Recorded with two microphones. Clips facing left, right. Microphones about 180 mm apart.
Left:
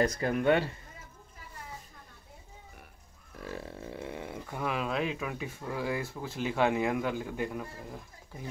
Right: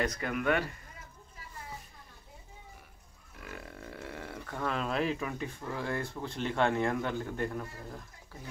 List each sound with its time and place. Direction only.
0.0 s speech: 30° left (ahead or behind)
3.3 s speech: 30° left (ahead or behind); by 8.5 s 10° left (ahead or behind)